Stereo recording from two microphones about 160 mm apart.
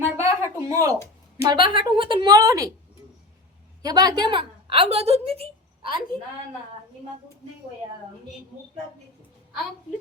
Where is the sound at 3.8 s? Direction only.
25° right (ahead or behind).